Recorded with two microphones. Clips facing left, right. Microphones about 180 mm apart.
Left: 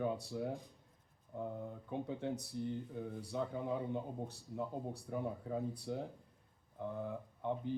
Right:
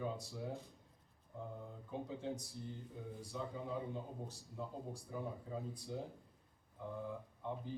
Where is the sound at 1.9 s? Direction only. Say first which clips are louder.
Left 3 dB; 60° left (ahead or behind).